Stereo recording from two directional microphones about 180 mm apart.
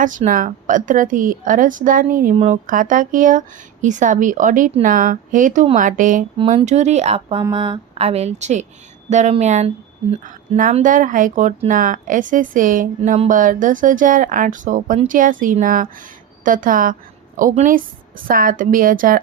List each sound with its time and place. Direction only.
0.3 s speech: 45° right (ahead or behind)
2.3 s speech: 35° right (ahead or behind)
2.6 s a woman's voice: 50° right (ahead or behind)